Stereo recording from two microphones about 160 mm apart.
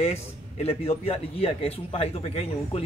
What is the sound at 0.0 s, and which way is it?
A man's voice, 40° left (ahead or behind).